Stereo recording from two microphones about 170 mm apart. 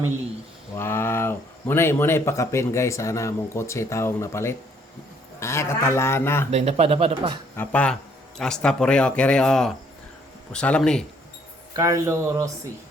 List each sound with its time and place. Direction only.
0.8 s speech: 15° left (ahead or behind)
6.5 s speech: 40° right (ahead or behind)
7.5 s speech: 10° left (ahead or behind)
11.8 s speech: 20° right (ahead or behind)